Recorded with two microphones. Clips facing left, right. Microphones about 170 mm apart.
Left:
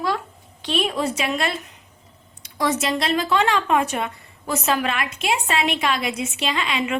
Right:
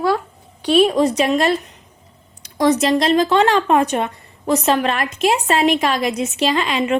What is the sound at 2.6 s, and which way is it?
A woman's voice, 35° right (ahead or behind).